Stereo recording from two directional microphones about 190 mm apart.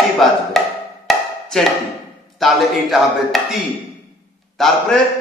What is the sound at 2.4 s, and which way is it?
A man's voice, centre (ahead or behind).